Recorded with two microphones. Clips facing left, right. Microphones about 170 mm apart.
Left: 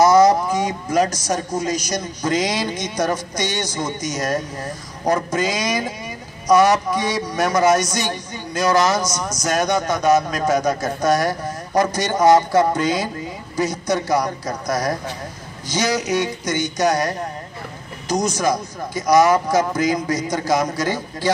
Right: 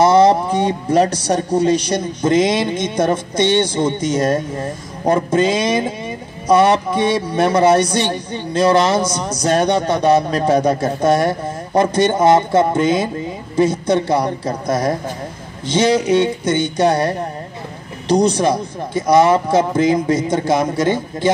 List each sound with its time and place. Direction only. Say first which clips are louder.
0.0 s speech: right 2 dB; 30° right (ahead or behind)